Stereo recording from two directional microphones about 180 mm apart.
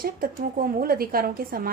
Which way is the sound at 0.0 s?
55° right (ahead or behind).